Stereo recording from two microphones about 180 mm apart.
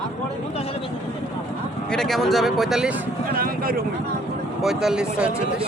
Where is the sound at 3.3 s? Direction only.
55° right (ahead or behind).